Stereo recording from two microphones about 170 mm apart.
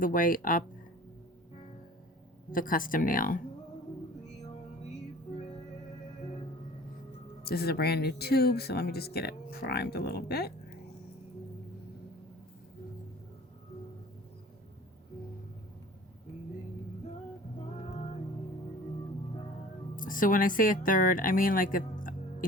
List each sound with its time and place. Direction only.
0.0 s speech: 55° left (ahead or behind)
2.5 s speech: 55° left (ahead or behind)
7.4 s speech: 65° left (ahead or behind)
20.0 s speech: 55° left (ahead or behind)